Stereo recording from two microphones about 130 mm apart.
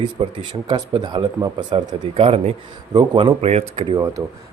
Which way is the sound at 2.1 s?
50° right (ahead or behind).